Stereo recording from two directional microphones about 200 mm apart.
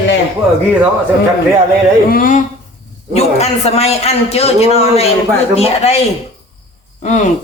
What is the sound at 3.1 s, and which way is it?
A man's voice, 30° left (ahead or behind).